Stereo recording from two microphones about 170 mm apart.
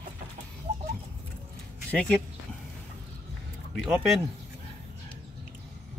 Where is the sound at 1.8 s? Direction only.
5° left (ahead or behind).